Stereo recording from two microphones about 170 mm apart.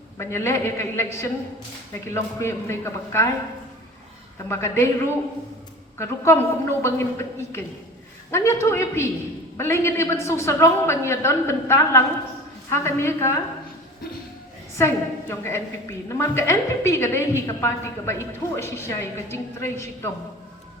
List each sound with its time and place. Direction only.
0.2 s a woman's voice: 15° left (ahead or behind)
4.4 s a woman's voice: 15° left (ahead or behind)
6.0 s a woman's voice: 15° left (ahead or behind)
14.8 s a woman's voice: 15° left (ahead or behind)